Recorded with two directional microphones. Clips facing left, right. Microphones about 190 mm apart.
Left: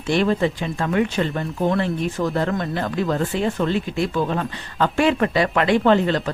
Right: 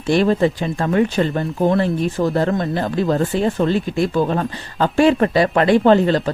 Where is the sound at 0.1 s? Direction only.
35° right (ahead or behind).